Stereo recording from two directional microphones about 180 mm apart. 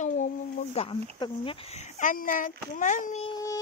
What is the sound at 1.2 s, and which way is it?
Speech, 30° left (ahead or behind).